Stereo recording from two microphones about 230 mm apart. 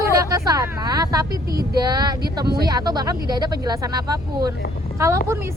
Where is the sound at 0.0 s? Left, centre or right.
Centre.